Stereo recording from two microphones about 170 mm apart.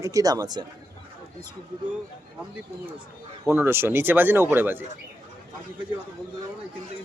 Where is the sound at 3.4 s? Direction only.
15° right (ahead or behind).